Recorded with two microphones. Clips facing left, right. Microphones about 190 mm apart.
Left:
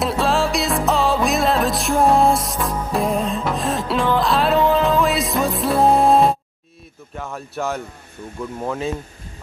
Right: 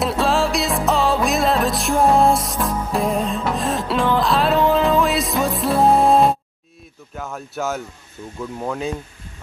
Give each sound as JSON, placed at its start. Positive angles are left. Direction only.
{"t": 0.0, "sound": "music", "side_deg": 0}
{"t": 7.2, "sound": "speech", "side_deg": 0}